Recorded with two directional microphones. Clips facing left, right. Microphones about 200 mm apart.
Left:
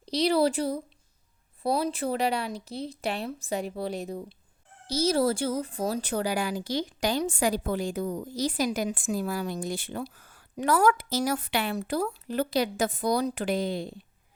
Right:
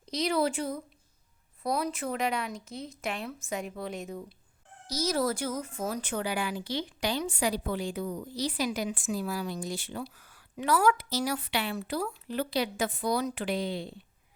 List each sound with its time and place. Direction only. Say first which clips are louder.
0.0 s speech: left 5 dB; 35° left (ahead or behind)